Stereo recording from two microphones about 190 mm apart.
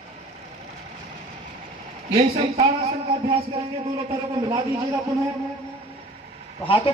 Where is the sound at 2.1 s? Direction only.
35° right (ahead or behind).